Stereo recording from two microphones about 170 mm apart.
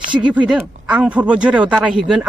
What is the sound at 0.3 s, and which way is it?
Speech, 10° right (ahead or behind).